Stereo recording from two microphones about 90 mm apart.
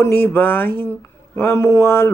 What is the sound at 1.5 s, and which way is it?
Speech, 30° left (ahead or behind).